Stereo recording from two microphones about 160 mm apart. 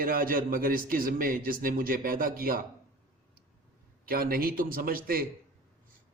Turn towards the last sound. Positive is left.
turn(degrees=-65)  # may be behind; listen again after turning